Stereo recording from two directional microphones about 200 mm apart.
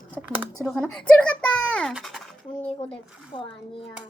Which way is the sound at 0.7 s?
5° left (ahead or behind).